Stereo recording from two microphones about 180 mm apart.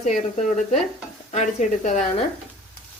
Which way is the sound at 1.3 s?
40° left (ahead or behind).